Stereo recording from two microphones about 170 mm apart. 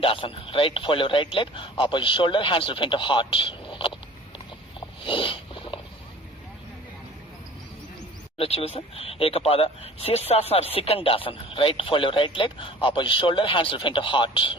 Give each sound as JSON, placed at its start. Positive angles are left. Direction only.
{"t": 0.0, "sound": "speech", "side_deg": 30}
{"t": 5.0, "sound": "a sound", "side_deg": 30}
{"t": 8.4, "sound": "speech", "side_deg": 35}